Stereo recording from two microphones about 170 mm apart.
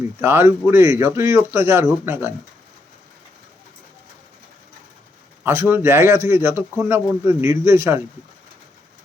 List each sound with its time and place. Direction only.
0.2 s a man's voice: 15° right (ahead or behind)
5.4 s a man's voice: 15° right (ahead or behind)